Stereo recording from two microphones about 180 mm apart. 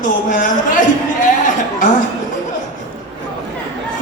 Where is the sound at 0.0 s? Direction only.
45° left (ahead or behind).